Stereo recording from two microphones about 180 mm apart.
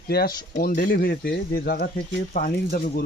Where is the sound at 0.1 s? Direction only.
60° left (ahead or behind).